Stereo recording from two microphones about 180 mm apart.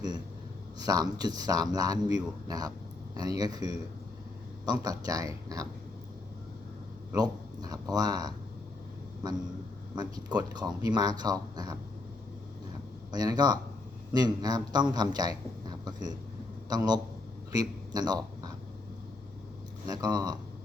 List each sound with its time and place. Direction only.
0.8 s a man's voice: 20° right (ahead or behind)
7.1 s a man's voice: 20° right (ahead or behind)
13.1 s a man's voice: 20° right (ahead or behind)
19.9 s a man's voice: 20° right (ahead or behind)